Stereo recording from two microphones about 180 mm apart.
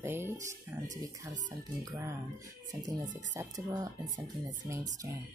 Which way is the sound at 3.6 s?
20° right (ahead or behind).